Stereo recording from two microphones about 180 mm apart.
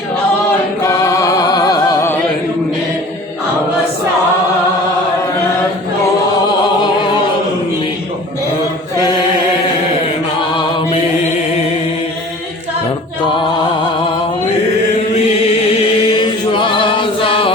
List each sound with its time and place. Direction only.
0.9 s music: 15° left (ahead or behind)
10.6 s mantra: 30° left (ahead or behind)
16.0 s chant: 25° left (ahead or behind)